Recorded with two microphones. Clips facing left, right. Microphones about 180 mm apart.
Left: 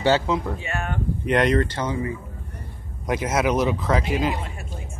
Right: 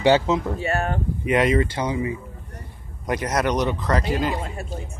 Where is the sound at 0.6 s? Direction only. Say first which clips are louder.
Right 5 dB; 40° right (ahead or behind).